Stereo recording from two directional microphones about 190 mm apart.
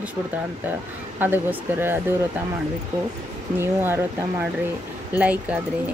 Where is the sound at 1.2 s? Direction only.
10° right (ahead or behind).